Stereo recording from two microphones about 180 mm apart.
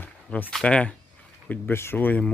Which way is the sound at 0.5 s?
5° left (ahead or behind).